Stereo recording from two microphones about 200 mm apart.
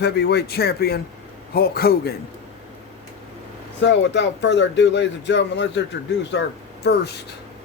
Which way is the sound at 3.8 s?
60° left (ahead or behind).